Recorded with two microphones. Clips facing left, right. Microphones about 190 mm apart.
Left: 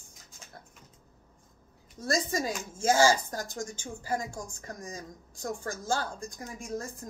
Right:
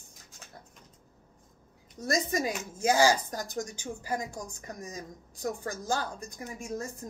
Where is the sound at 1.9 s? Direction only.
20° right (ahead or behind).